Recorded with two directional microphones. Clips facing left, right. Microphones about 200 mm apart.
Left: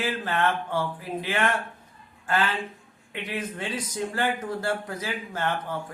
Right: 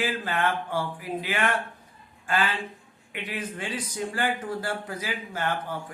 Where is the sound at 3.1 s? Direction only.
25° left (ahead or behind).